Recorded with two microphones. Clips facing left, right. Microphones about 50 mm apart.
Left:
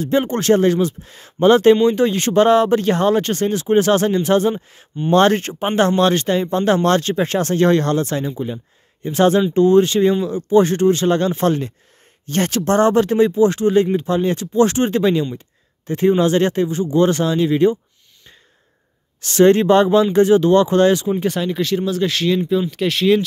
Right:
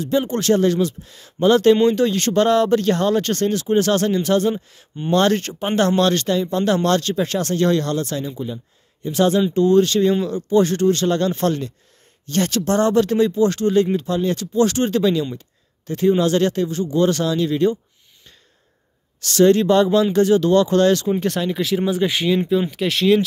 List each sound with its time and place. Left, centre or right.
0.0 s speech: left
19.2 s speech: left
21.2 s speech: centre
21.8 s speech: centre
22.7 s speech: centre